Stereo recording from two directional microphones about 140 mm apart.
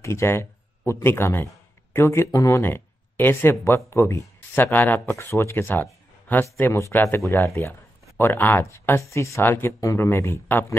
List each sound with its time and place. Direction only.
0.0 s speech: 20° left (ahead or behind)